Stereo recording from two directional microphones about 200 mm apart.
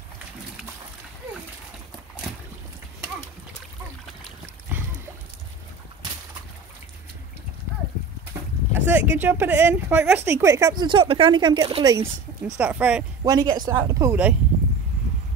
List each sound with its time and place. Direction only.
8.7 s speech: 10° right (ahead or behind)
12.5 s speech: 5° right (ahead or behind)
13.2 s speech: 20° right (ahead or behind)